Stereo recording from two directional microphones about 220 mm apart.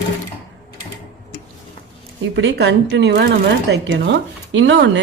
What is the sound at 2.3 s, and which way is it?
Speech, 55° right (ahead or behind).